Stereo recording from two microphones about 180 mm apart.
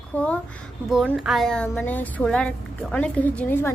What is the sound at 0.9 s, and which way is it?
A woman's voice, centre (ahead or behind).